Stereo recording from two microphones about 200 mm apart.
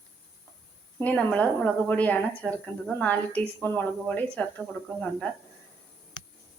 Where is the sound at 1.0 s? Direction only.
10° left (ahead or behind).